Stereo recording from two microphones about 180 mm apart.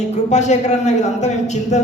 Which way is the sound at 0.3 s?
40° left (ahead or behind).